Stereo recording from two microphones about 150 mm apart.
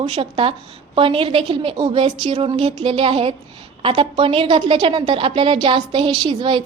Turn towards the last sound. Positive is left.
turn(degrees=-35)  # may be behind; listen again after turning